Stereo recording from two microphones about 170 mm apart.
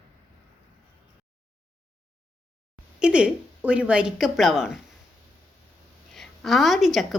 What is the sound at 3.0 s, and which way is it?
Speech, 5° right (ahead or behind).